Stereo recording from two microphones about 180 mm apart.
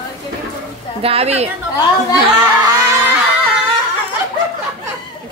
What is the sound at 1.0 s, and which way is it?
Speech, 35° right (ahead or behind).